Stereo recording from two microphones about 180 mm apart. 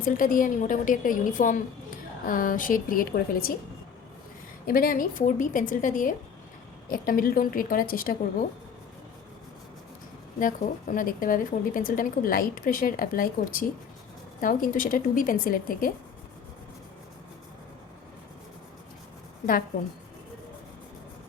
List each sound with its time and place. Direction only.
0.0 s a woman's voice: 50° left (ahead or behind)
4.6 s a woman's voice: 50° left (ahead or behind)
10.4 s a woman's voice: 45° left (ahead or behind)